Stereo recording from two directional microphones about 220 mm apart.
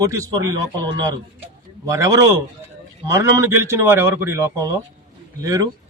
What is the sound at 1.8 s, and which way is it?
A man's voice, 15° right (ahead or behind).